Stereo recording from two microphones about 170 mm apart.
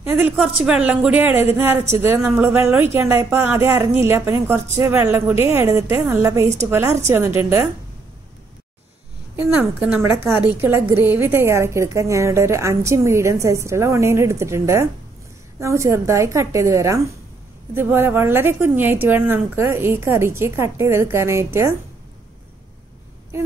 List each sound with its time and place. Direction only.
0.0 s speech: 10° right (ahead or behind)
10.0 s speech: 15° right (ahead or behind)